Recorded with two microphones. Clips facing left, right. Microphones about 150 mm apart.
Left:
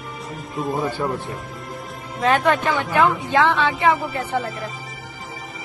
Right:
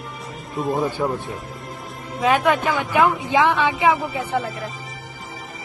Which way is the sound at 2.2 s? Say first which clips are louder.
Even; 5° right (ahead or behind).